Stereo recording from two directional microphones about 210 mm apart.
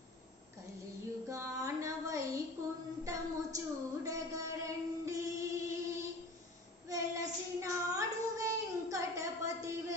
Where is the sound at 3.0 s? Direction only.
15° right (ahead or behind).